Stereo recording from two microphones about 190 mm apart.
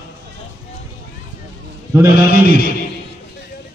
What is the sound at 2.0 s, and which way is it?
Speech, 55° left (ahead or behind).